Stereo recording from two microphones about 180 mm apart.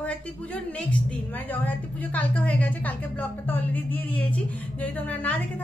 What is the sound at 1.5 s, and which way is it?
A woman's voice, 10° left (ahead or behind).